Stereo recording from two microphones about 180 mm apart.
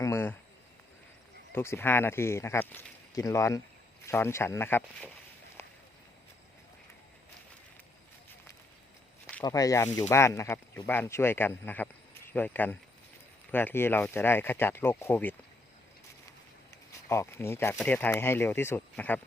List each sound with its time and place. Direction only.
0.0 s a sound: 15° left (ahead or behind)
1.5 s speech: 15° left (ahead or behind)
9.2 s speech: 20° left (ahead or behind)
17.1 s speech: 15° left (ahead or behind)